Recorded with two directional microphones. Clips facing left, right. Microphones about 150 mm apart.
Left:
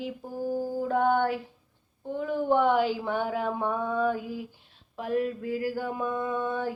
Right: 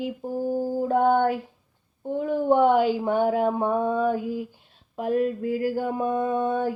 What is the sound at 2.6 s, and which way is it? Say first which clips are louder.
Mantra: right 5 dB; 45° right (ahead or behind).